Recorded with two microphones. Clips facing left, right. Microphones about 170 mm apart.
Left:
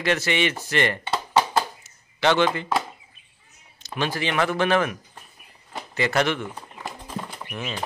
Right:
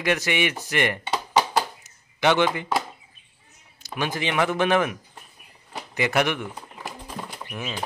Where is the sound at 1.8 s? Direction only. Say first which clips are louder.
Even; 15° right (ahead or behind).